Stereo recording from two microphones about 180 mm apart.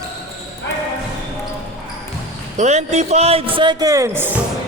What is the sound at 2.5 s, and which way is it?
Speech, 40° right (ahead or behind).